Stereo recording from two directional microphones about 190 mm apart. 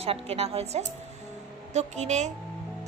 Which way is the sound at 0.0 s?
35° right (ahead or behind).